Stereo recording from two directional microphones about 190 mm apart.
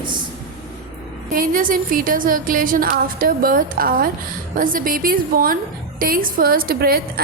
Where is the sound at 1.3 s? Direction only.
45° right (ahead or behind).